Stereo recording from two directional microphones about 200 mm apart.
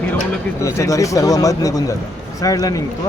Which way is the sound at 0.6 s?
15° left (ahead or behind).